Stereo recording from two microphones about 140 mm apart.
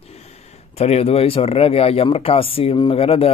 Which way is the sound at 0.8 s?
50° left (ahead or behind).